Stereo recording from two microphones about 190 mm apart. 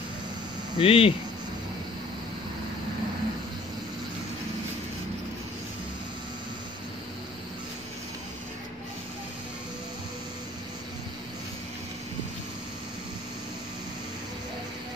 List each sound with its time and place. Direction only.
0.7 s hum: 30° left (ahead or behind)